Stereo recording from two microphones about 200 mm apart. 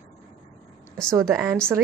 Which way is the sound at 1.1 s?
15° right (ahead or behind).